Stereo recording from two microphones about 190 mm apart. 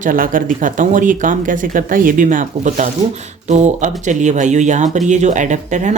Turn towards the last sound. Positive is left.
turn(degrees=-40)  # may be behind; listen again after turning